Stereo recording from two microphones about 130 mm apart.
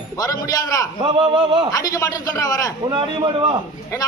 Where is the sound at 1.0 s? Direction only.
35° right (ahead or behind).